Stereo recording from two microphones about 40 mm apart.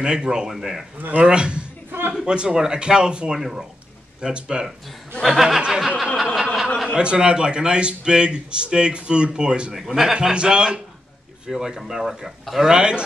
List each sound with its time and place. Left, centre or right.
0.0 s a man's voice: right
0.5 s speech: centre
1.2 s a man's voice: right
1.9 s a sound: right
2.2 s a man's voice: right
3.3 s speech: centre
4.2 s a man's voice: right
5.2 s speech: centre
5.7 s snicker: centre
6.9 s a man's voice: right
9.8 s speech: centre
10.1 s a man's voice: right
11.4 s a man's voice: centre